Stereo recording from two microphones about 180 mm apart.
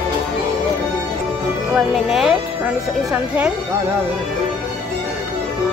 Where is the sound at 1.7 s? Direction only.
5° right (ahead or behind).